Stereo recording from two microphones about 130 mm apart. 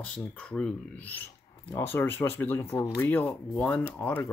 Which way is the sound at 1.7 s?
15° left (ahead or behind).